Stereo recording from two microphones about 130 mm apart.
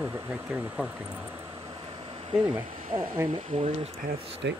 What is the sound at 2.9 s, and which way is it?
Speech, 20° right (ahead or behind).